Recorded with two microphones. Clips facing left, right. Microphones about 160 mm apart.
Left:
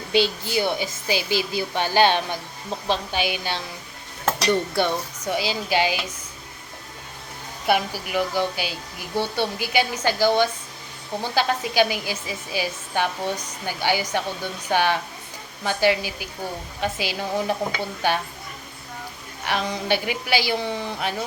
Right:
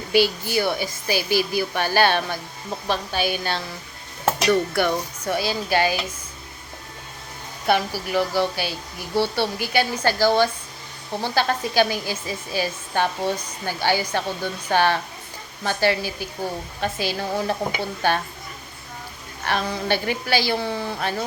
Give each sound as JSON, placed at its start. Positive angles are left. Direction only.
{"t": 0.1, "sound": "a woman's voice", "side_deg": 20}
{"t": 4.4, "sound": "speech", "side_deg": 25}
{"t": 5.3, "sound": "a woman's voice", "side_deg": 15}
{"t": 7.7, "sound": "a woman's voice", "side_deg": 15}
{"t": 19.5, "sound": "a woman's voice", "side_deg": 15}